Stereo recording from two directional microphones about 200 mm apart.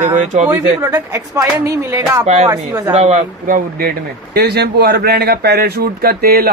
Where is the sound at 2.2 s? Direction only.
35° right (ahead or behind).